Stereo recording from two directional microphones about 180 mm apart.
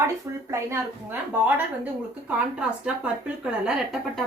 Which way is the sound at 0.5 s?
15° right (ahead or behind).